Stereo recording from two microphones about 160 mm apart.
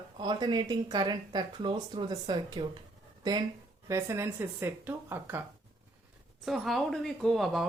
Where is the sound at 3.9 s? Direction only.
15° right (ahead or behind).